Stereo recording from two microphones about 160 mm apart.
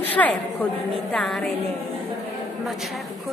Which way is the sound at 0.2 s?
10° left (ahead or behind).